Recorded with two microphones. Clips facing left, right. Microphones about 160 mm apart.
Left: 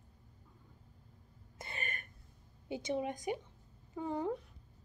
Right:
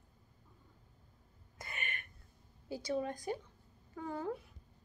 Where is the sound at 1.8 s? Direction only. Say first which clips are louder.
Left 1 dB; 40° left (ahead or behind).